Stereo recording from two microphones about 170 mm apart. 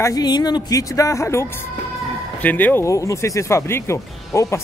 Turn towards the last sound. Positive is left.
turn(degrees=15)  # may be behind; listen again after turning